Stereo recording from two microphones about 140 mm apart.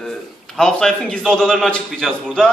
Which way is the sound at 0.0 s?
5° left (ahead or behind).